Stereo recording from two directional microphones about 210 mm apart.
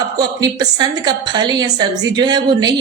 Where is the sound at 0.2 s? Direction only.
20° right (ahead or behind).